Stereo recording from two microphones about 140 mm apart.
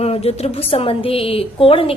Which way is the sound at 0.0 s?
45° left (ahead or behind).